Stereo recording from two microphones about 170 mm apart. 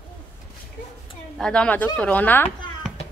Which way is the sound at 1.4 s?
5° left (ahead or behind).